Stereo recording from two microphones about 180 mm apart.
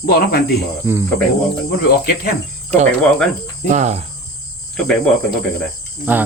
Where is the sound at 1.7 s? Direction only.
65° left (ahead or behind).